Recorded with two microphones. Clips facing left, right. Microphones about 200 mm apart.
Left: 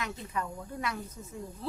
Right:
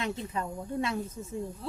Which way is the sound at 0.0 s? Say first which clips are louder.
Right 3 dB; 25° right (ahead or behind).